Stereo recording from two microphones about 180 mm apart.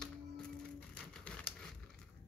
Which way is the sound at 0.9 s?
5° left (ahead or behind).